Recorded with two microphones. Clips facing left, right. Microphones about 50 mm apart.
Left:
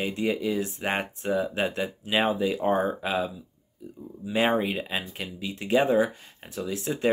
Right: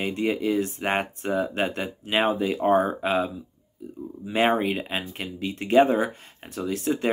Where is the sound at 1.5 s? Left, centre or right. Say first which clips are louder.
Right 1 dB; centre.